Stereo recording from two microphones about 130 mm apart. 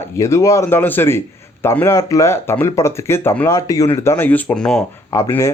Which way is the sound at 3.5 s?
25° left (ahead or behind).